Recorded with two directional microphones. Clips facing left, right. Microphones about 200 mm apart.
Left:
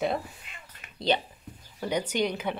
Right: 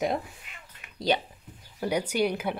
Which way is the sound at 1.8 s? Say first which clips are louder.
Right 2 dB; 10° right (ahead or behind).